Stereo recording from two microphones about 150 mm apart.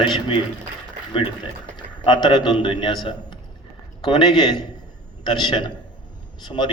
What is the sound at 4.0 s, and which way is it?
A man's voice, 30° left (ahead or behind).